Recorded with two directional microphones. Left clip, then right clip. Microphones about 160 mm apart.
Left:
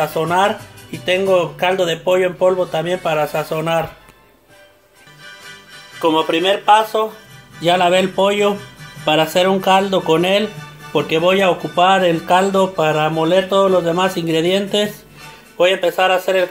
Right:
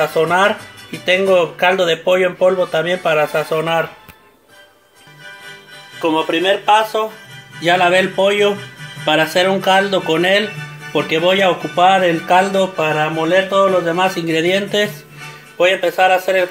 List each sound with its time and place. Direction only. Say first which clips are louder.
0.0 s speech: right 2 dB; 5° right (ahead or behind)
5.9 s speech: left 1 dB; 5° left (ahead or behind)
12.7 s speech: left 1 dB; 15° left (ahead or behind); by 16.4 s centre (ahead or behind)